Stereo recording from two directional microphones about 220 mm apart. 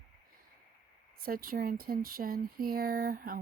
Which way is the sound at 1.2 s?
40° right (ahead or behind).